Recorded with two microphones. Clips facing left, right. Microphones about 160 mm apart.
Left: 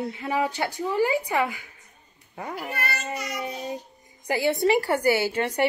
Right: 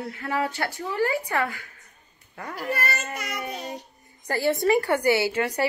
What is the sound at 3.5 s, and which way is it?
Child singing, 75° right (ahead or behind).